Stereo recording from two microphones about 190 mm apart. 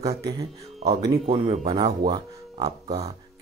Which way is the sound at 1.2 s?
30° right (ahead or behind).